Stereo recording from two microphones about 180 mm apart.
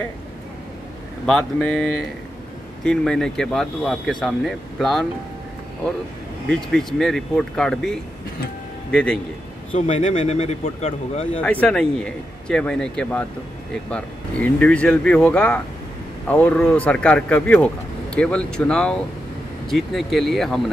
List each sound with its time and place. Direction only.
1.2 s speech: 5° left (ahead or behind)
6.5 s speech: centre (ahead or behind)
9.7 s speech: 40° left (ahead or behind)
11.4 s speech: 5° left (ahead or behind)